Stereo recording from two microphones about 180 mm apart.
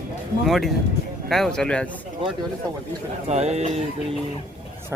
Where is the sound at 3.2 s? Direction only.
40° right (ahead or behind).